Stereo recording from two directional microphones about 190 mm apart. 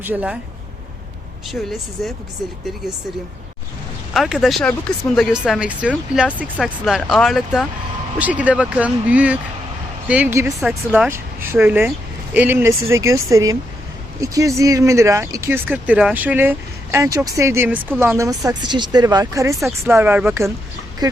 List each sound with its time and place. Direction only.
0.0 s speech: 5° right (ahead or behind)
2.0 s speech: centre (ahead or behind)
4.1 s speech: centre (ahead or behind)